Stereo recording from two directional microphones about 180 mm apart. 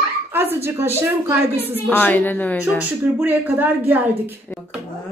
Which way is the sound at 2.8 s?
10° right (ahead or behind).